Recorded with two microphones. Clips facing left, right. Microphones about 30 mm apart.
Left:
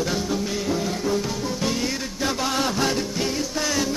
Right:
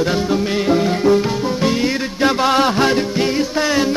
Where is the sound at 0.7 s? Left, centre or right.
Right.